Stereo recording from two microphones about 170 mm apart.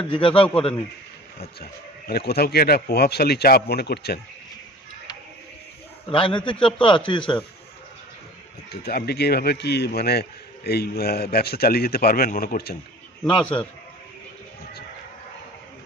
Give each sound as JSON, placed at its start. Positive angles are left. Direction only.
{"t": 0.1, "sound": "a man's voice", "side_deg": 30}
{"t": 0.4, "sound": "a man's voice", "side_deg": 5}
{"t": 1.6, "sound": "a man's voice", "side_deg": 65}
{"t": 6.0, "sound": "a man's voice", "side_deg": 30}
{"t": 8.8, "sound": "a man's voice", "side_deg": 65}
{"t": 13.2, "sound": "a man's voice", "side_deg": 10}